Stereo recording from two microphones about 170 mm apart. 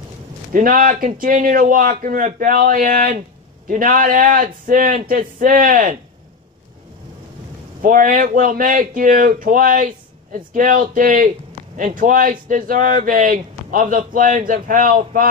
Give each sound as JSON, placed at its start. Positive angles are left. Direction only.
{"t": 0.5, "sound": "a man's voice", "side_deg": -55}
{"t": 7.8, "sound": "speech", "side_deg": -55}